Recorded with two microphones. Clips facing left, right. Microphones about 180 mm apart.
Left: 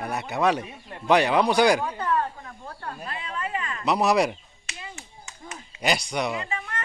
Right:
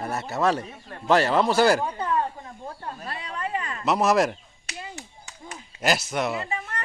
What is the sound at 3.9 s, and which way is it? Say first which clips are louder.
Speech: right 1 dB; centre (ahead or behind).